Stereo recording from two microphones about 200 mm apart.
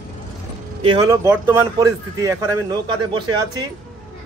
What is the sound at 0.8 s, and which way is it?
A man's voice, 20° right (ahead or behind).